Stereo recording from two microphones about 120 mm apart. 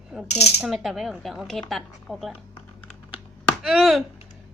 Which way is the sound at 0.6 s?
Centre (ahead or behind).